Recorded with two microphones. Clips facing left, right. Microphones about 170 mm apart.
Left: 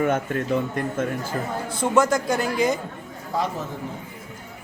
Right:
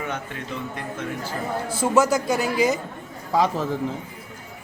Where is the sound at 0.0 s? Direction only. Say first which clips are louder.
Left 8 dB; 50° left (ahead or behind).